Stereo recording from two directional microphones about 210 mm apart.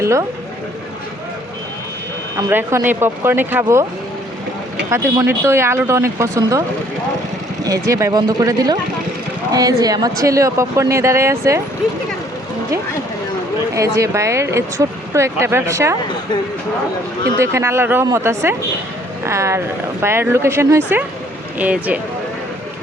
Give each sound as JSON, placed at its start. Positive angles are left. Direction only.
{"t": 0.0, "sound": "speech", "side_deg": -15}
{"t": 2.3, "sound": "speech", "side_deg": -10}
{"t": 4.9, "sound": "speech", "side_deg": -15}
{"t": 7.6, "sound": "speech", "side_deg": -15}
{"t": 13.7, "sound": "speech", "side_deg": -15}
{"t": 17.3, "sound": "speech", "side_deg": -15}